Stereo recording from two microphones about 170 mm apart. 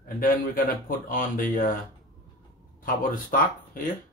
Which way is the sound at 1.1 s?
55° left (ahead or behind).